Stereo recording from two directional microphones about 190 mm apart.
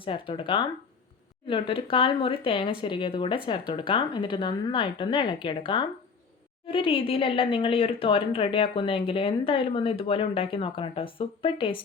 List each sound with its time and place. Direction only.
0.0 s speech: 25° left (ahead or behind)